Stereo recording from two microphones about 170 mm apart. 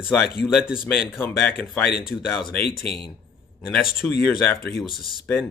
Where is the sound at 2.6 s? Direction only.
65° left (ahead or behind).